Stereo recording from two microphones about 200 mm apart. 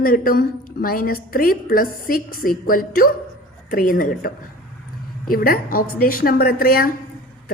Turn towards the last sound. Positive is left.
turn(degrees=45)  # may be behind; listen again after turning